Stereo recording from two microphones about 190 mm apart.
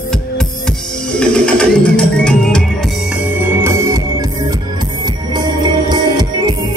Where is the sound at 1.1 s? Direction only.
5° left (ahead or behind).